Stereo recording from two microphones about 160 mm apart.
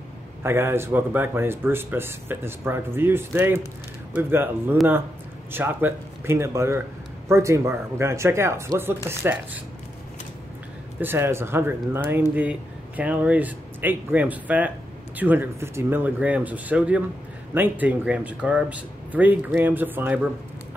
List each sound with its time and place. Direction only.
0.4 s speech: 15° right (ahead or behind)
11.0 s speech: 15° right (ahead or behind)